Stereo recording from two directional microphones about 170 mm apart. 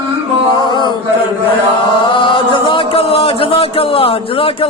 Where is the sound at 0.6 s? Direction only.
25° left (ahead or behind).